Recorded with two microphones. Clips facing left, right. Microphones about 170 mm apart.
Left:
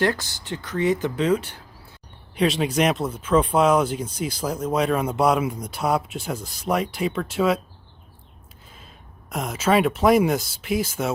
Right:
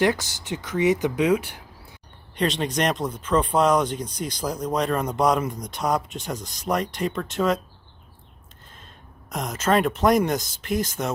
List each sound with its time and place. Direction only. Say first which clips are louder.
0.0 s speech: right 1 dB; 15° right (ahead or behind)
2.3 s speech: left 3 dB; 5° left (ahead or behind)
9.3 s speech: left 1 dB; 5° left (ahead or behind)